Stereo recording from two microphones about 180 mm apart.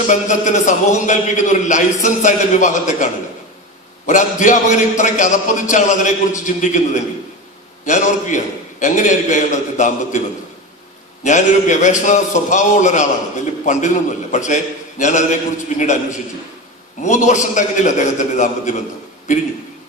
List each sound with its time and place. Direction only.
0.0 s a man's voice: 45° left (ahead or behind)
11.2 s a man's voice: 40° left (ahead or behind)